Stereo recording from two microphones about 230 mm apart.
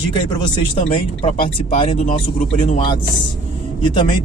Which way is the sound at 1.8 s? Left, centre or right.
Left.